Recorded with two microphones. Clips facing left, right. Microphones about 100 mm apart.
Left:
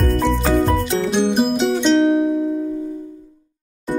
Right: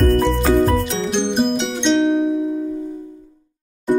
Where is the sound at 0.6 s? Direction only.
Centre (ahead or behind).